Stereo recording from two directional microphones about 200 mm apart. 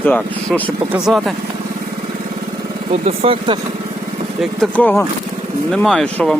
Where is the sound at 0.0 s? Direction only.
10° left (ahead or behind).